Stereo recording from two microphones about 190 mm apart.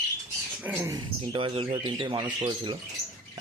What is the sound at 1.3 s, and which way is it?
Speech, 25° right (ahead or behind).